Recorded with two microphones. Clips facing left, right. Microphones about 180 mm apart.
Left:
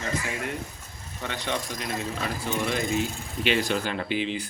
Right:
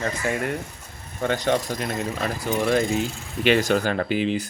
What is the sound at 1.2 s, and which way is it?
Speech, 45° right (ahead or behind).